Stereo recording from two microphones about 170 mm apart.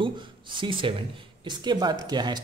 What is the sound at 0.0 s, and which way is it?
Speech, 30° right (ahead or behind).